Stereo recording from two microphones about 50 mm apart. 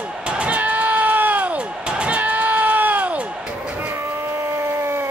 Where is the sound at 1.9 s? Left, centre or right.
Right.